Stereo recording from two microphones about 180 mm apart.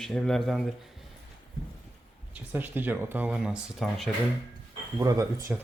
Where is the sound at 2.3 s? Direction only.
10° right (ahead or behind).